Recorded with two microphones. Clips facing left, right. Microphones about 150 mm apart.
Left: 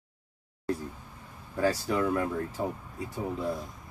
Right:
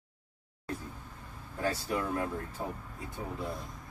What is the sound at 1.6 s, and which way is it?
Speech, 90° left.